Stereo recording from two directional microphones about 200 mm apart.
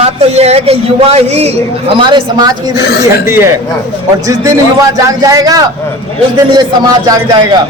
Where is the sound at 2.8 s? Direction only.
55° left (ahead or behind).